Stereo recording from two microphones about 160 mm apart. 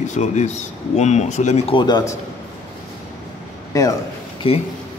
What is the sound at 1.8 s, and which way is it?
Speech, 25° left (ahead or behind).